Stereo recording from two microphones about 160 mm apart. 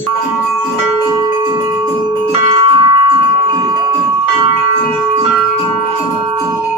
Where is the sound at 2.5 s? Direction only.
30° right (ahead or behind).